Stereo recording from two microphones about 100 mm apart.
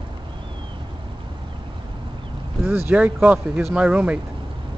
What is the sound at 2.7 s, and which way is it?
Speech, 15° right (ahead or behind).